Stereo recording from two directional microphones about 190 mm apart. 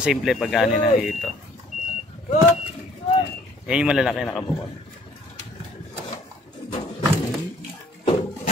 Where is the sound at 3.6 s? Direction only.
5° right (ahead or behind).